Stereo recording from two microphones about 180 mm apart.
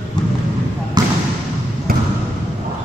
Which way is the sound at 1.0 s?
20° right (ahead or behind).